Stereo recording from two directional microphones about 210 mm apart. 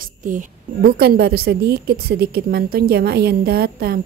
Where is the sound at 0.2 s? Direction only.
40° right (ahead or behind).